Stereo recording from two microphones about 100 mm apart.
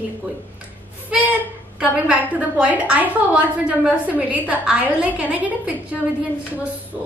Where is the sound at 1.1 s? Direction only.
10° right (ahead or behind).